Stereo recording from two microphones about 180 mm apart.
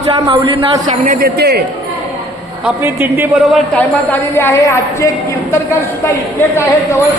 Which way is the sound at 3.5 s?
10° left (ahead or behind).